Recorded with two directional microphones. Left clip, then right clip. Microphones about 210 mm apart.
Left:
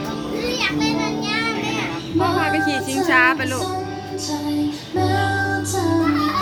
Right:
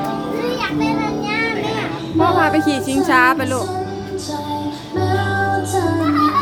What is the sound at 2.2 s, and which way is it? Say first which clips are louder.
Music: right 5 dB; 30° right (ahead or behind).